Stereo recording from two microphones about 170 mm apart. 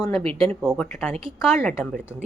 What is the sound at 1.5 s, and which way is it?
Speech, 10° left (ahead or behind).